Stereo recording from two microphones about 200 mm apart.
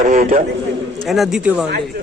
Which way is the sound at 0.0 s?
40° right (ahead or behind).